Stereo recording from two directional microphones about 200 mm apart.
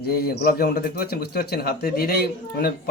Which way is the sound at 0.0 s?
50° left (ahead or behind).